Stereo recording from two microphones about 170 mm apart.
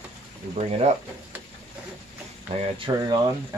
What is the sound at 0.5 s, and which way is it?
Speech, 40° right (ahead or behind).